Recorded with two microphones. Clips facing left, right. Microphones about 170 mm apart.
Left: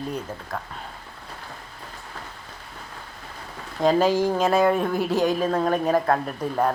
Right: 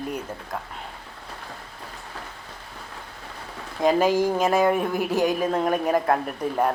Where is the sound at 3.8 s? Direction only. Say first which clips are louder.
Even; 15° right (ahead or behind).